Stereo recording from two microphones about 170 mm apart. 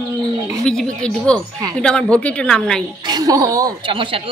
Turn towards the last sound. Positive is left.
turn(degrees=-30)  # may be behind; listen again after turning